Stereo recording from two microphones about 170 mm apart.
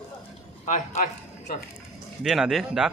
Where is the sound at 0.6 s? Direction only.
45° left (ahead or behind).